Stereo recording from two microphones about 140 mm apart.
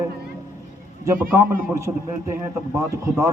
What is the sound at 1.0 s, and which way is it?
Speech, 20° right (ahead or behind).